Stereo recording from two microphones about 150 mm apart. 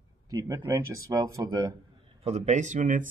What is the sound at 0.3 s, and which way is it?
Speech, 25° right (ahead or behind).